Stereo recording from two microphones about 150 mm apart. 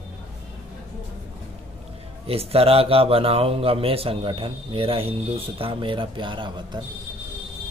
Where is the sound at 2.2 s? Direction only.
40° right (ahead or behind).